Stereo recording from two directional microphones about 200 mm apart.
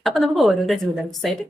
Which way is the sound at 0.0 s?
Centre (ahead or behind).